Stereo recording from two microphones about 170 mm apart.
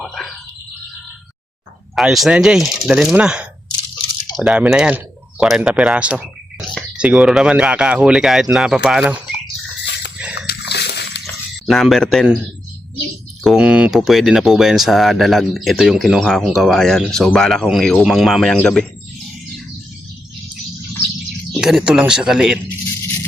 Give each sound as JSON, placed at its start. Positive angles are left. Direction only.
{"t": 0.0, "sound": "a sound", "side_deg": 0}
{"t": 2.0, "sound": "speech", "side_deg": 0}
{"t": 10.3, "sound": "a sound", "side_deg": 75}
{"t": 11.6, "sound": "speech", "side_deg": 0}
{"t": 13.4, "sound": "speech", "side_deg": -5}
{"t": 21.5, "sound": "speech", "side_deg": -5}